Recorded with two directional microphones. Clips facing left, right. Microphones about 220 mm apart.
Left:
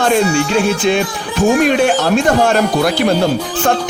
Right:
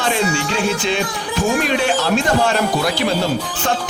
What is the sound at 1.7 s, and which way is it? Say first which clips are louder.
Speech: left 5 dB; 50° left (ahead or behind).